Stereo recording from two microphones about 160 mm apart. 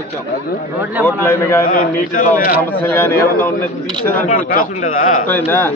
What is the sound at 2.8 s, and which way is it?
Speech, 10° left (ahead or behind).